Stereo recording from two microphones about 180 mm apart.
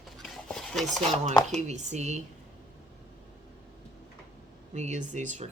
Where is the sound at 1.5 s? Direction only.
40° right (ahead or behind).